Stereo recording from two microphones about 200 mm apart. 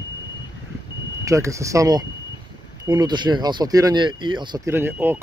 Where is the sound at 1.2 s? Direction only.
15° right (ahead or behind).